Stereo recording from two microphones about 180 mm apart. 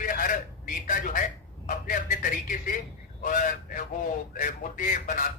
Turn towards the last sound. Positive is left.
turn(degrees=45)  # may be behind; listen again after turning